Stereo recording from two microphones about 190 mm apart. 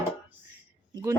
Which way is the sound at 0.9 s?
20° right (ahead or behind).